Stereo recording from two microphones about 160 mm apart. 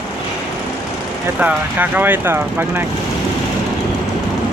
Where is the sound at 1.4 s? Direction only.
10° right (ahead or behind).